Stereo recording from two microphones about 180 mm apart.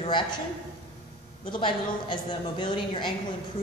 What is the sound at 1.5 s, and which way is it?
A woman's voice, 30° left (ahead or behind).